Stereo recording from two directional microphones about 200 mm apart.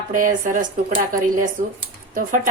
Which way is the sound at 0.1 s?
40° right (ahead or behind).